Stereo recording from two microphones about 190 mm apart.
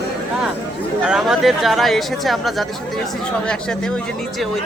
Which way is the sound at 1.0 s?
5° right (ahead or behind).